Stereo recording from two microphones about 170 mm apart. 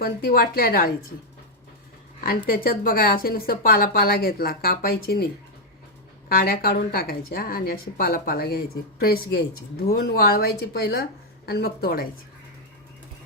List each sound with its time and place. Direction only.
0.0 s a woman's voice: 60° left (ahead or behind)
2.2 s a woman's voice: 60° left (ahead or behind)